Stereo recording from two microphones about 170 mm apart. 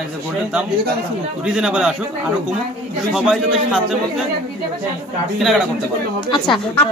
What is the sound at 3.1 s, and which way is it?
Speech, centre (ahead or behind).